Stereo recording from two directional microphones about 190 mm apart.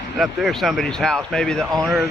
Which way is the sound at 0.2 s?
Centre (ahead or behind).